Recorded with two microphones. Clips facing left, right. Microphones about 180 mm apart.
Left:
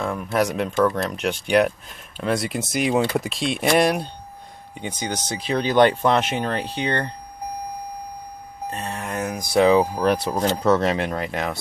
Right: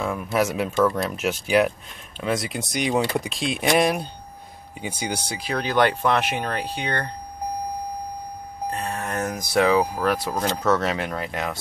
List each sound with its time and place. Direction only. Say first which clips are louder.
0.0 s speech: left 1 dB; centre (ahead or behind)
5.4 s speech: left 4 dB; 25° left (ahead or behind)
8.7 s speech: right 1 dB; 25° left (ahead or behind)
9.0 s speech: even; 15° left (ahead or behind)
10.9 s speech: left 3 dB; 30° left (ahead or behind)